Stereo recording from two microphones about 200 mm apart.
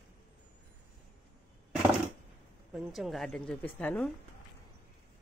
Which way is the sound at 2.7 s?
Centre (ahead or behind).